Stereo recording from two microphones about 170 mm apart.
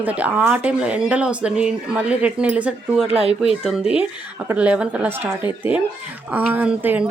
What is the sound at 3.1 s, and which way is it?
Speech, 35° right (ahead or behind).